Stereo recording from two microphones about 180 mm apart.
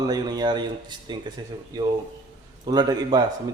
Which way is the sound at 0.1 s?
25° right (ahead or behind).